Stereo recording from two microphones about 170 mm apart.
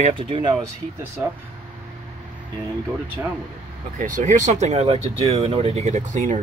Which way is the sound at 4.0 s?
50° right (ahead or behind).